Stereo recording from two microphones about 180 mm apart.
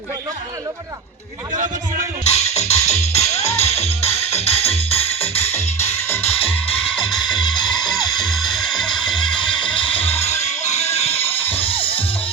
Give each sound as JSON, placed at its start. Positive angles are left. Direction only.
{"t": 2.2, "sound": "music", "side_deg": 35}
{"t": 6.0, "sound": "music", "side_deg": 15}
{"t": 7.0, "sound": "music", "side_deg": 25}
{"t": 8.2, "sound": "music", "side_deg": 0}
{"t": 9.7, "sound": "music", "side_deg": 30}